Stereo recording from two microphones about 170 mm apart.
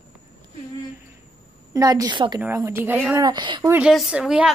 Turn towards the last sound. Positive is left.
turn(degrees=-5)  # may be behind; listen again after turning